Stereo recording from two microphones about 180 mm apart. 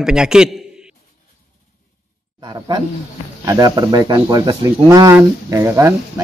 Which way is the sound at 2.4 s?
20° right (ahead or behind).